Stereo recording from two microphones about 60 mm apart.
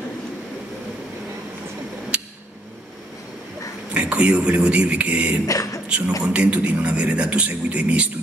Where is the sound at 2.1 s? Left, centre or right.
Centre.